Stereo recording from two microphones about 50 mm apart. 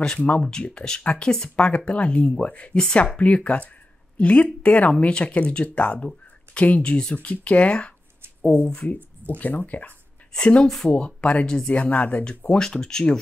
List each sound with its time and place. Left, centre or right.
0.2 s speech: left
9.4 s speech: left
10.3 s speech: centre
12.4 s speech: centre